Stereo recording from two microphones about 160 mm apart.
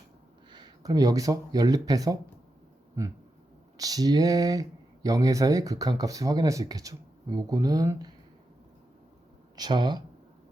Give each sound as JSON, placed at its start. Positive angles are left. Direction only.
{"t": 0.5, "sound": "speech", "side_deg": -25}
{"t": 9.6, "sound": "speech", "side_deg": -25}